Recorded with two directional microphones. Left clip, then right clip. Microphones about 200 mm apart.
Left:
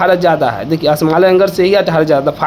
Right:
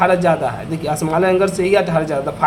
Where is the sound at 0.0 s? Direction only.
35° left (ahead or behind).